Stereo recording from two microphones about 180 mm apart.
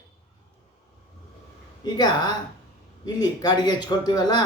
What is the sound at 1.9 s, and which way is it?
Speech, 20° left (ahead or behind).